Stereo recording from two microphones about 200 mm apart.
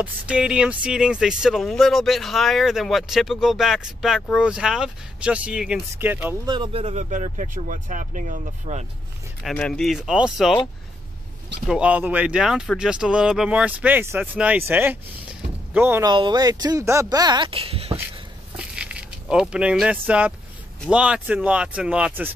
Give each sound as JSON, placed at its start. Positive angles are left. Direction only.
{"t": 0.0, "sound": "speech", "side_deg": -5}
{"t": 6.4, "sound": "speech", "side_deg": -25}
{"t": 9.4, "sound": "speech", "side_deg": 5}
{"t": 11.6, "sound": "speech", "side_deg": -5}
{"t": 16.1, "sound": "speech", "side_deg": -20}
{"t": 18.6, "sound": "a sound", "side_deg": -5}
{"t": 20.9, "sound": "speech", "side_deg": -5}